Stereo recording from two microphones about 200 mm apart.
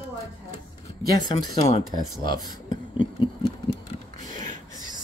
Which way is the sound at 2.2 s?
20° left (ahead or behind).